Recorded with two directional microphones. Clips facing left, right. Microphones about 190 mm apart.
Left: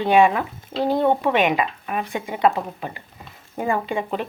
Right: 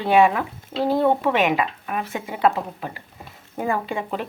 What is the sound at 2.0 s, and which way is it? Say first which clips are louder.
Speech: left 2 dB; 5° right (ahead or behind).